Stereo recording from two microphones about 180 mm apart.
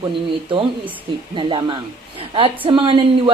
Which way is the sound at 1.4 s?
30° right (ahead or behind).